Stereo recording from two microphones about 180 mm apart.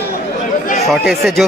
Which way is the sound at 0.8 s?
Centre (ahead or behind).